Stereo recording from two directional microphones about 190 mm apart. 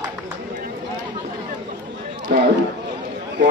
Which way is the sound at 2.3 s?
60° right (ahead or behind).